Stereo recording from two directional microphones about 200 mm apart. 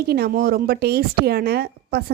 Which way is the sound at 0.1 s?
50° right (ahead or behind).